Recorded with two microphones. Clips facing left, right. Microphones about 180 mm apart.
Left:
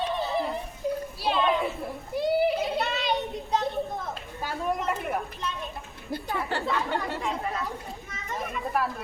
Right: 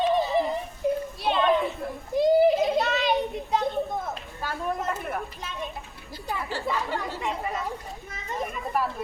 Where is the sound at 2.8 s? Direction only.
Centre (ahead or behind).